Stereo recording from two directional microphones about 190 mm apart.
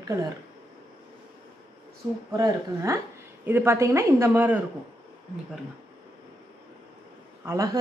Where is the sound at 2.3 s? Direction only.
15° right (ahead or behind).